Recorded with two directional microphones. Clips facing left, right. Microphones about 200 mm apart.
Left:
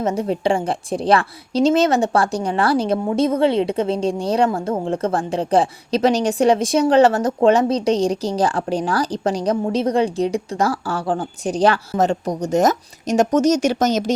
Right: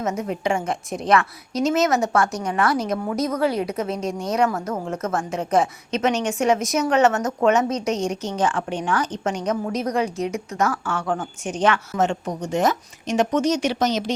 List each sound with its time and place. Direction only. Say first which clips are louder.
0.0 s a woman's voice: left 5 dB; 30° left (ahead or behind)